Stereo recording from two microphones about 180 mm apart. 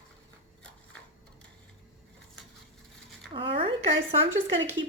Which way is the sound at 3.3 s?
30° right (ahead or behind).